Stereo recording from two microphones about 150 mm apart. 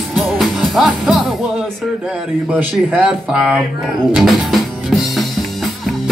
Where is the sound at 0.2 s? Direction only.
Centre (ahead or behind).